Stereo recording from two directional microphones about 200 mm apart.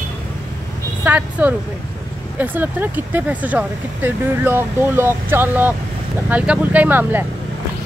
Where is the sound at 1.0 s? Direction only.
10° right (ahead or behind).